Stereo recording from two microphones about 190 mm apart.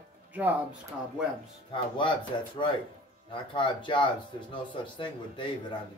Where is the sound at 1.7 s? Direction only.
25° left (ahead or behind).